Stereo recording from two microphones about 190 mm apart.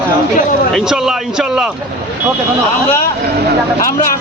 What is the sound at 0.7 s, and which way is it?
A man's voice, centre (ahead or behind).